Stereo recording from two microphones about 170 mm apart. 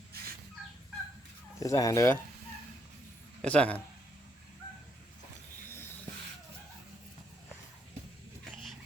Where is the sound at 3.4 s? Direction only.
5° left (ahead or behind).